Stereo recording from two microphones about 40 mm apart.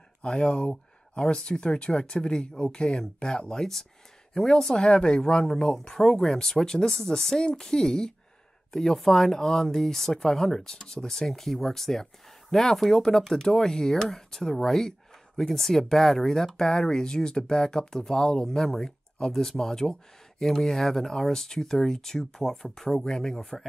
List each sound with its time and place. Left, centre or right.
0.2 s speech: left
18.9 s a sound: centre
19.3 s speech: centre